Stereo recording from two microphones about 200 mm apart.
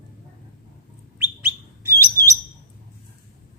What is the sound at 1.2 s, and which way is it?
Bird, 10° right (ahead or behind).